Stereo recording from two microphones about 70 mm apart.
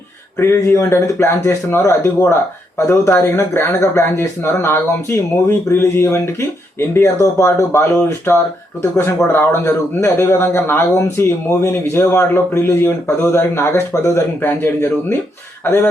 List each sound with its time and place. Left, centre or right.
0.5 s a man's voice: left
14.4 s a man's voice: left